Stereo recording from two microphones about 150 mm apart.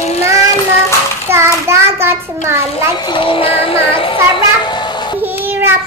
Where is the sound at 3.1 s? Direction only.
35° left (ahead or behind).